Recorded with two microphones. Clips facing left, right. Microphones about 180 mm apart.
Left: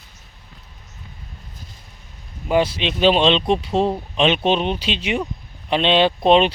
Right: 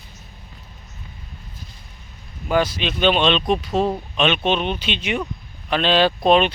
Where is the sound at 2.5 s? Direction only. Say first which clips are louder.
Left 2 dB; 25° left (ahead or behind).